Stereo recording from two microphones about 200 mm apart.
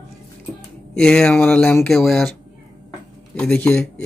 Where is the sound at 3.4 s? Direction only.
5° left (ahead or behind).